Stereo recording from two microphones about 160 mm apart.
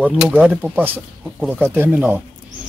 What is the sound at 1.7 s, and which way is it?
Speech, 10° right (ahead or behind).